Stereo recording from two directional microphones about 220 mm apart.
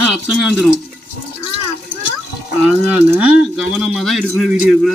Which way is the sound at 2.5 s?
5° right (ahead or behind).